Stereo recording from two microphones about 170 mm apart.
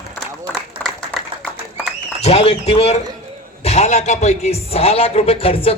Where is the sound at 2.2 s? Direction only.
35° left (ahead or behind).